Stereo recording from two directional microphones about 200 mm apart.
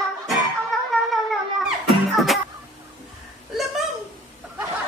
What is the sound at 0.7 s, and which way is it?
Music, centre (ahead or behind).